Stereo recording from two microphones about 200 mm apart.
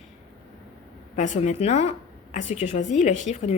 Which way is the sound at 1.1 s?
35° left (ahead or behind).